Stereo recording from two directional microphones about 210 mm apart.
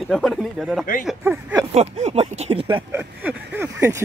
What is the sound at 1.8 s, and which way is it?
Speech, 30° right (ahead or behind).